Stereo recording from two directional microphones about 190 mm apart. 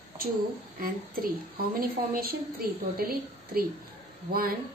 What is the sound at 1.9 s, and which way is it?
Female singing, 50° right (ahead or behind).